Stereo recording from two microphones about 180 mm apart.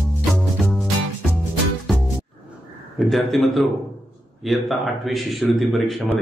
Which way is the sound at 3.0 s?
Centre (ahead or behind).